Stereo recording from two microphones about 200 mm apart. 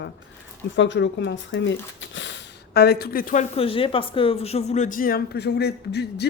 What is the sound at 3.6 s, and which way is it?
Speech, 25° left (ahead or behind).